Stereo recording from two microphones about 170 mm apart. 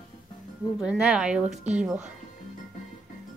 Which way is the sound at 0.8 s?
5° right (ahead or behind).